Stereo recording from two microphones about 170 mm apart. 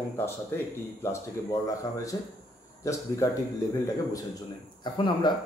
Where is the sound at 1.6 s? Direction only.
20° left (ahead or behind).